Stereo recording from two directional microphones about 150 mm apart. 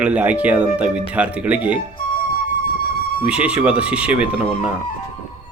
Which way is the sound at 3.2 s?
5° right (ahead or behind).